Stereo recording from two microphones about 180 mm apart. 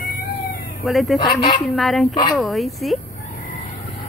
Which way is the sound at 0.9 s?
Centre (ahead or behind).